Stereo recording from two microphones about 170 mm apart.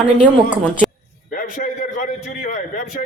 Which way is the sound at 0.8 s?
Centre (ahead or behind).